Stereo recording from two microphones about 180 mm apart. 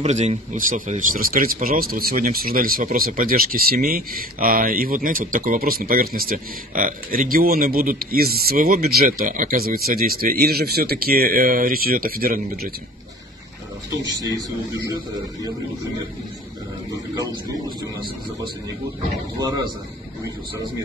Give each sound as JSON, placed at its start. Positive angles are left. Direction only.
{"t": 0.0, "sound": "speech", "side_deg": -40}
{"t": 13.8, "sound": "speech", "side_deg": -20}